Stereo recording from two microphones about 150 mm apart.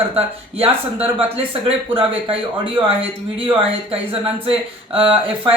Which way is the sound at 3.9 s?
40° right (ahead or behind).